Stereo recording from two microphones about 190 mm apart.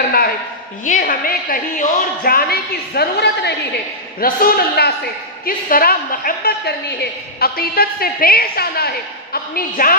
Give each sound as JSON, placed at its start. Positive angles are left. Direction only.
{"t": 0.8, "sound": "a woman's voice", "side_deg": 45}